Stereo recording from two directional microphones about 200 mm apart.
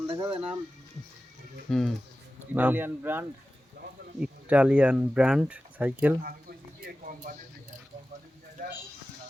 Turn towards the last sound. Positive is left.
turn(degrees=-45)  # may be behind; listen again after turning